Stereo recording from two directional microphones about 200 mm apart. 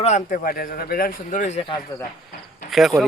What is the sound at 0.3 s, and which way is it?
A man's voice, 45° left (ahead or behind).